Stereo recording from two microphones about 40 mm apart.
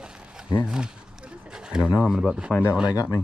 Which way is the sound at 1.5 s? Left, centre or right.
Centre.